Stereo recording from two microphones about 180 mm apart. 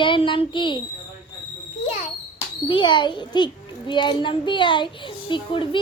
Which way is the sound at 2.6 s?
25° left (ahead or behind).